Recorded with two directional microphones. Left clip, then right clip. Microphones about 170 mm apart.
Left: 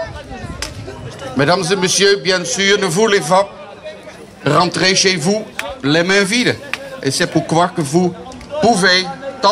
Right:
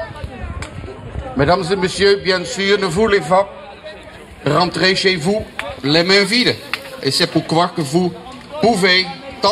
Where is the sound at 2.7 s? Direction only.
25° right (ahead or behind).